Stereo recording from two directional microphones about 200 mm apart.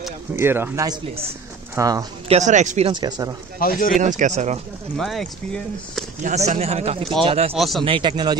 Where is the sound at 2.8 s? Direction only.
20° right (ahead or behind).